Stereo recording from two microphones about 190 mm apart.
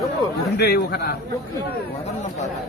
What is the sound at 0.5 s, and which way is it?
Speech, 55° left (ahead or behind).